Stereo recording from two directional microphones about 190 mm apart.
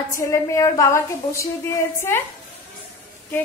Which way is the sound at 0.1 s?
15° left (ahead or behind).